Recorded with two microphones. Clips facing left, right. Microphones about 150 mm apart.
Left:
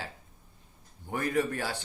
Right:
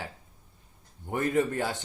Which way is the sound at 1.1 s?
20° right (ahead or behind).